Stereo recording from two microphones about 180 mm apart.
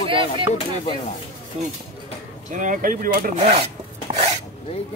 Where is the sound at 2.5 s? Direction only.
45° right (ahead or behind).